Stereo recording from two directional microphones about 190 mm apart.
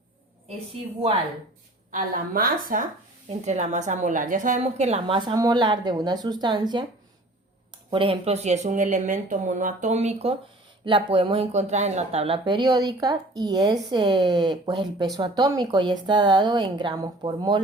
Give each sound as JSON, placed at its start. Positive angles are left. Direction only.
{"t": 1.9, "sound": "a woman's voice", "side_deg": -45}
{"t": 7.9, "sound": "speech", "side_deg": -25}